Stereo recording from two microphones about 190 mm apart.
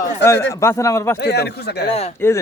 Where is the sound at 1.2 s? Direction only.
60° left (ahead or behind).